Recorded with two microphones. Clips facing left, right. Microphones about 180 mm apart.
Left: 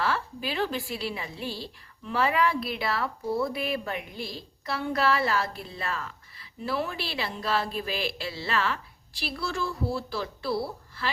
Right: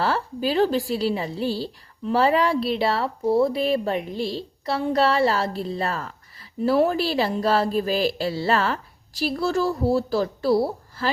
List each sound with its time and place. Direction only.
0.0 s a woman's voice: 35° right (ahead or behind)